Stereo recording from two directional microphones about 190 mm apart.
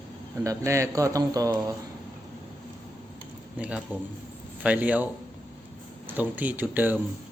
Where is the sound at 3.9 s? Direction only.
10° right (ahead or behind).